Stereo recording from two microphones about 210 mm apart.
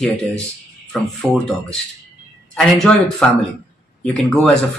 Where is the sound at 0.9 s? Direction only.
Centre (ahead or behind).